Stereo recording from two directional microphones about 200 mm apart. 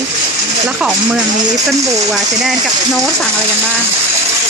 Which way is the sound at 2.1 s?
Centre (ahead or behind).